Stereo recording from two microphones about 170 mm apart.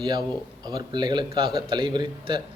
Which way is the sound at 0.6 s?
25° right (ahead or behind).